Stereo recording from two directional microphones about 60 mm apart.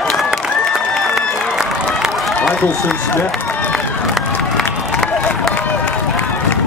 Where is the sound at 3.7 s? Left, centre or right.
Centre.